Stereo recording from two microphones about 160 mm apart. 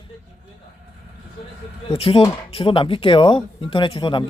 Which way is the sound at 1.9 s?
35° left (ahead or behind).